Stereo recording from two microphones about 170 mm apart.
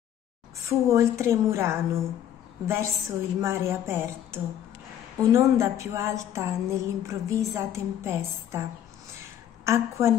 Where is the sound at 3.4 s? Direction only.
15° right (ahead or behind).